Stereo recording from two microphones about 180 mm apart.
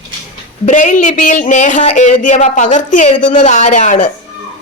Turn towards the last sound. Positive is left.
turn(degrees=40)  # may be behind; listen again after turning